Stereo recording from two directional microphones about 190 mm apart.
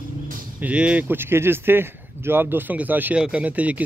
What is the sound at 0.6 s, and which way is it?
Speech, 5° right (ahead or behind).